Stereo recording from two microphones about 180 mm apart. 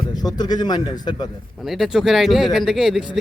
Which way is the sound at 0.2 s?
20° left (ahead or behind).